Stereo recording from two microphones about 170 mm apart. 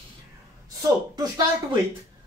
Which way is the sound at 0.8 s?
25° right (ahead or behind).